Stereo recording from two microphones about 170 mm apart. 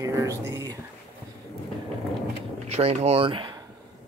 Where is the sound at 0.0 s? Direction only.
20° right (ahead or behind).